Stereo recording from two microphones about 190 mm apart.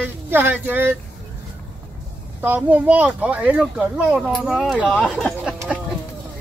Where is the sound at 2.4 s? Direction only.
10° right (ahead or behind).